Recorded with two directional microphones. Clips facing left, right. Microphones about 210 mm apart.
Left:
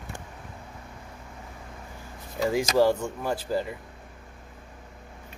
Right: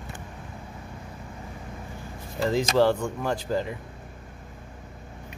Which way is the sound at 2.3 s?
10° left (ahead or behind).